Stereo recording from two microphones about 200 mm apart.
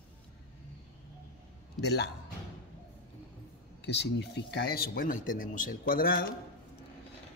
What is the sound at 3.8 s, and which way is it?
Speech, 55° left (ahead or behind).